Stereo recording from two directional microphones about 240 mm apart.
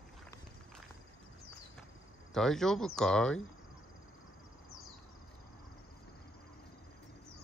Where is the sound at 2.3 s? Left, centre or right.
Centre.